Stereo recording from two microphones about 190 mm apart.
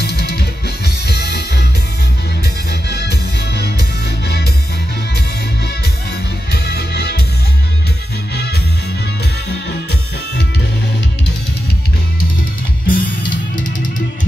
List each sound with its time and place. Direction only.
0.0 s music: 55° left (ahead or behind)
2.9 s music: 55° left (ahead or behind)
6.5 s music: 60° left (ahead or behind)
12.8 s music: 45° left (ahead or behind)